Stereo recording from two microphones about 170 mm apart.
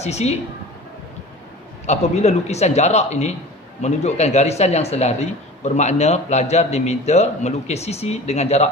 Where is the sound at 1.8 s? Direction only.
40° left (ahead or behind).